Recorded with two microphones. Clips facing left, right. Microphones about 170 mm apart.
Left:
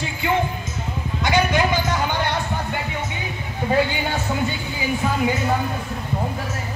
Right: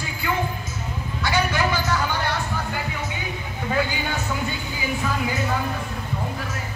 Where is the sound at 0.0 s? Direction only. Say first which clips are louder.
Left 5 dB; 25° left (ahead or behind).